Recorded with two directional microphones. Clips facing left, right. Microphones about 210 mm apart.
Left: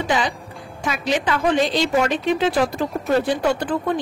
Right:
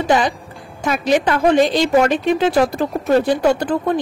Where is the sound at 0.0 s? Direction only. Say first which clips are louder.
Right 5 dB; 45° right (ahead or behind).